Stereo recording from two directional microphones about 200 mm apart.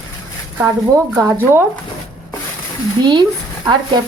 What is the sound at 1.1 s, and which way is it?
Speech, 15° right (ahead or behind).